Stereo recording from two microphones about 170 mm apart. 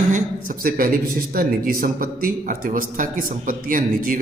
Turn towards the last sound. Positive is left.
turn(degrees=-55)  # may be behind; listen again after turning